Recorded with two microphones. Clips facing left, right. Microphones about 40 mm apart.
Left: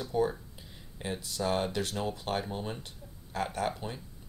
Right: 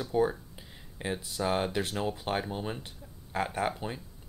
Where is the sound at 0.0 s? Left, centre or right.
Centre.